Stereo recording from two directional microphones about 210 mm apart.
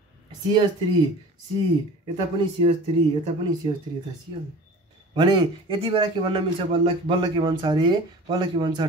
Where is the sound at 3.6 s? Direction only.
25° right (ahead or behind).